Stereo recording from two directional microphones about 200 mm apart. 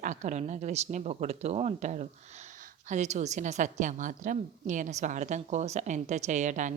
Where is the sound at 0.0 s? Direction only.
35° right (ahead or behind).